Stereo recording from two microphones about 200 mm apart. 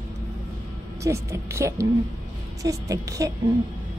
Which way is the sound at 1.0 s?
15° right (ahead or behind).